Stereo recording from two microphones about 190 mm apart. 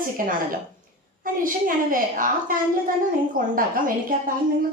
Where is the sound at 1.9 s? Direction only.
45° right (ahead or behind).